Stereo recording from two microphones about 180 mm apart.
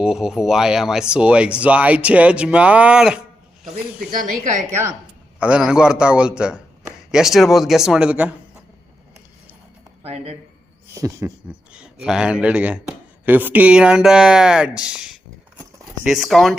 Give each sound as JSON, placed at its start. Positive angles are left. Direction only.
{"t": 0.0, "sound": "speech", "side_deg": -5}
{"t": 5.4, "sound": "speech", "side_deg": -5}
{"t": 10.0, "sound": "speech", "side_deg": -35}
{"t": 10.9, "sound": "speech", "side_deg": -15}
{"t": 11.7, "sound": "speech", "side_deg": -5}